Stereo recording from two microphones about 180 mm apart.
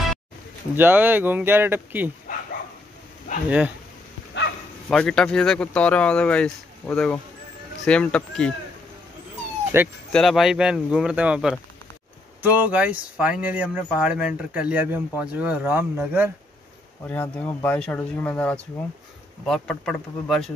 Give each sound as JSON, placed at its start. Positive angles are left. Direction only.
{"t": 0.7, "sound": "speech", "side_deg": -10}
{"t": 3.4, "sound": "speech", "side_deg": -5}
{"t": 4.8, "sound": "speech", "side_deg": 5}
{"t": 9.7, "sound": "speech", "side_deg": -15}
{"t": 10.1, "sound": "speech", "side_deg": 0}
{"t": 17.0, "sound": "speech", "side_deg": 10}